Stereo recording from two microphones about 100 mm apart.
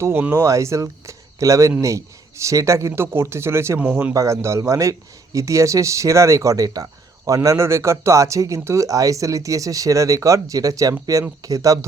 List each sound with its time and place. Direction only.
0.0 s speech: 25° right (ahead or behind)
4.1 s speech: 30° right (ahead or behind)